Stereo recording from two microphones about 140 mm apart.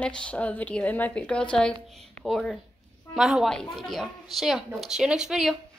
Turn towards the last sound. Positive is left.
turn(degrees=-5)  # may be behind; listen again after turning